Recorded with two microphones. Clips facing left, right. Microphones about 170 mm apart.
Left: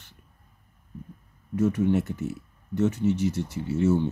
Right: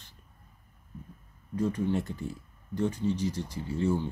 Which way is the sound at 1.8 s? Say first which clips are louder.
Left 6 dB; 20° left (ahead or behind).